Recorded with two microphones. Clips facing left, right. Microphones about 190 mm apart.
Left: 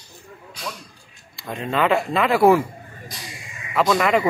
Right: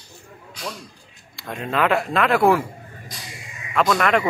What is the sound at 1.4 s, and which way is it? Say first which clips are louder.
Speech: even; centre (ahead or behind).